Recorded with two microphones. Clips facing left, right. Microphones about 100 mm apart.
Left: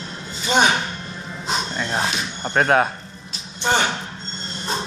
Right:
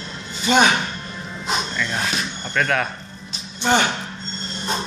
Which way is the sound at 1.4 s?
35° left (ahead or behind).